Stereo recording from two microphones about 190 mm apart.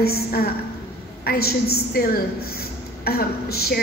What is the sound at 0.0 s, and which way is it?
A woman's voice, 55° left (ahead or behind).